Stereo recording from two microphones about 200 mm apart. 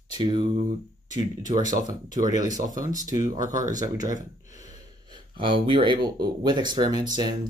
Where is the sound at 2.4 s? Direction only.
40° right (ahead or behind).